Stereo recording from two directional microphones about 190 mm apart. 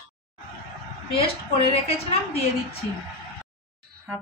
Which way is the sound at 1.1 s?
30° left (ahead or behind).